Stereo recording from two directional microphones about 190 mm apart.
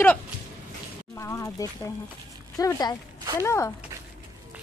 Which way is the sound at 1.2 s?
15° left (ahead or behind).